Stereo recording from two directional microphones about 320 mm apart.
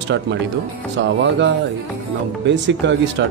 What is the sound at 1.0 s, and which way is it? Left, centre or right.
Speech, right.